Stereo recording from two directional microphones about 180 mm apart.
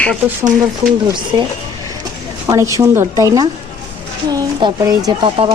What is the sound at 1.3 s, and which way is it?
A woman's voice, 25° right (ahead or behind).